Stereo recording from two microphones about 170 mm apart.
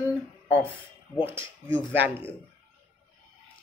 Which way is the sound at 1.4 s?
30° left (ahead or behind).